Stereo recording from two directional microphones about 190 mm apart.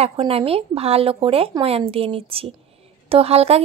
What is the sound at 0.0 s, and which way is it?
Speech, 30° right (ahead or behind).